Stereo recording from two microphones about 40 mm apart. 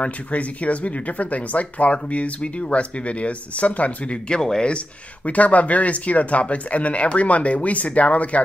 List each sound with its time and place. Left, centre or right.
0.0 s speech: left
4.4 s speech: centre
4.6 s speech: left